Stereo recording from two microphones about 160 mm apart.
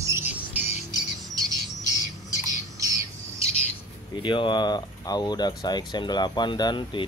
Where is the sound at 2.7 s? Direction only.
20° right (ahead or behind).